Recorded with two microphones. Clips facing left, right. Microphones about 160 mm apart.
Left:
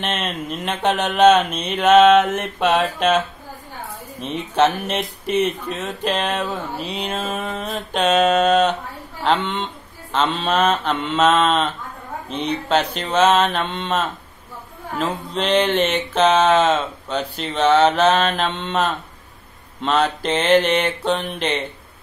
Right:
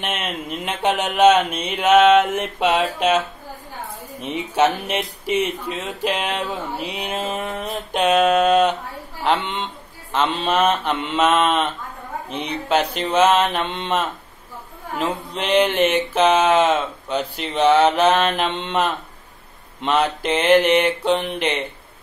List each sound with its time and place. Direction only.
0.0 s speech: 10° right (ahead or behind)
4.2 s a man's voice: 10° right (ahead or behind)